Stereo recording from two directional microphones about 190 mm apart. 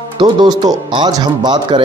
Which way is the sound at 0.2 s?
25° right (ahead or behind).